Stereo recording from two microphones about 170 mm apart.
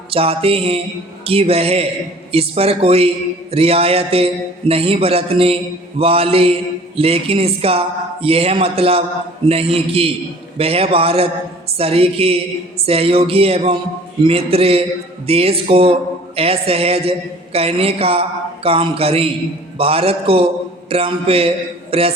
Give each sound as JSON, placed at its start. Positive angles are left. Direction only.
{"t": 0.1, "sound": "speech", "side_deg": -35}